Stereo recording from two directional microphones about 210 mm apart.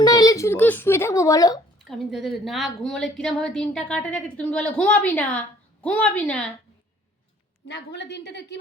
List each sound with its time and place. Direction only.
0.0 s a child's voice: 20° left (ahead or behind)
1.8 s a woman's voice: centre (ahead or behind)
7.7 s a woman's voice: 55° left (ahead or behind)